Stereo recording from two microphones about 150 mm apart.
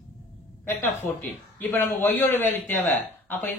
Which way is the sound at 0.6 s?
15° left (ahead or behind).